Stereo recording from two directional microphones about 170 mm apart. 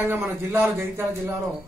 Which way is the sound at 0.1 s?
15° right (ahead or behind).